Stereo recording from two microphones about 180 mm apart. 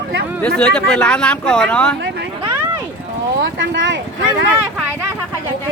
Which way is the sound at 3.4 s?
90° right.